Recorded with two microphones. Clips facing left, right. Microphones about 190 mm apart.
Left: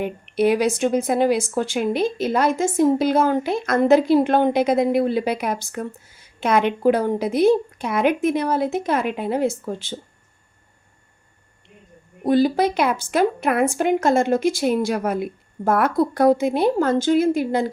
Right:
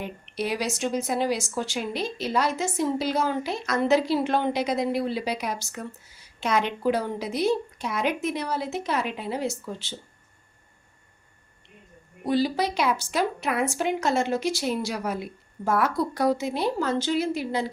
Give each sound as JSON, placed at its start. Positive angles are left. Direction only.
{"t": 0.0, "sound": "speech", "side_deg": 55}
{"t": 12.2, "sound": "speech", "side_deg": 50}